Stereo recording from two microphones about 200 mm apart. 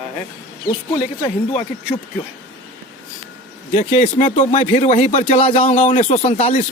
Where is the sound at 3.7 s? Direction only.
40° left (ahead or behind).